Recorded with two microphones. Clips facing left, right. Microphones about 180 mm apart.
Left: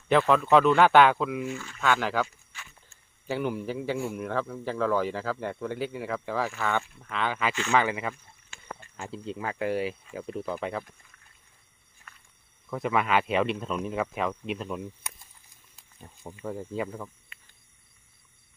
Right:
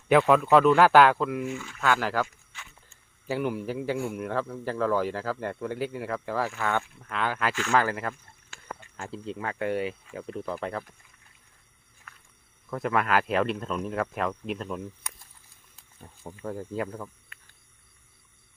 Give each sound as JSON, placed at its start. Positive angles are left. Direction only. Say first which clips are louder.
{"t": 0.1, "sound": "a man's voice", "louder": "right 1 dB", "side_deg": -5}
{"t": 9.6, "sound": "speech", "louder": "even", "side_deg": 30}
{"t": 9.8, "sound": "a man's voice", "louder": "even", "side_deg": 5}
{"t": 12.7, "sound": "a man's voice", "louder": "even", "side_deg": 0}
{"t": 16.3, "sound": "a man's voice", "louder": "even", "side_deg": 5}